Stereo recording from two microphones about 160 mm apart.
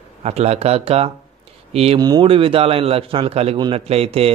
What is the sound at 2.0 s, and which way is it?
Speech, 25° right (ahead or behind).